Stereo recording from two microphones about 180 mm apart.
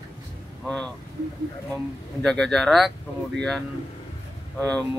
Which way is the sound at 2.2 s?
5° left (ahead or behind).